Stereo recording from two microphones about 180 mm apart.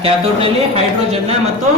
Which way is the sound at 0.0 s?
30° right (ahead or behind).